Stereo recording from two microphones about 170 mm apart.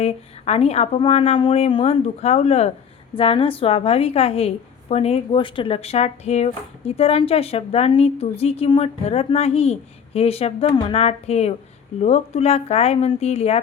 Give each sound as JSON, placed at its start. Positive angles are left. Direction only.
{"t": 0.0, "sound": "a woman's voice", "side_deg": 40}